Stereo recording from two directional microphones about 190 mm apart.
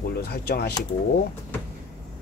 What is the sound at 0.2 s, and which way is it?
Speech, 55° left (ahead or behind).